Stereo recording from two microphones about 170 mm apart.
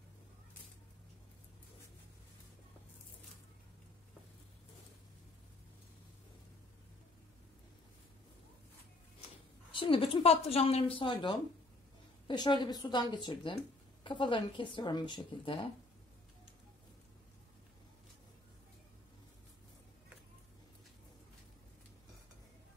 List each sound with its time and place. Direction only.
9.2 s a woman's voice: 30° left (ahead or behind)